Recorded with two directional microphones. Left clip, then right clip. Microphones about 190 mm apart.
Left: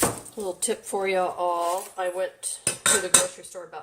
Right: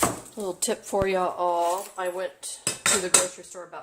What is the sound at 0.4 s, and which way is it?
Speech, 30° right (ahead or behind).